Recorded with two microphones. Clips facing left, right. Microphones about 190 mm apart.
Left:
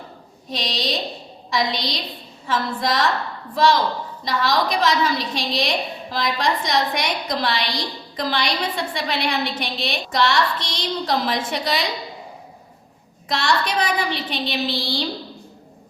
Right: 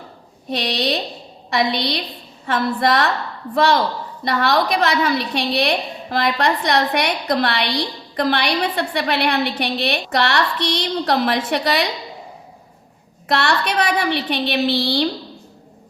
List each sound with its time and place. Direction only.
0.5 s a woman's voice: 60° right (ahead or behind)
13.2 s a woman's voice: 65° right (ahead or behind)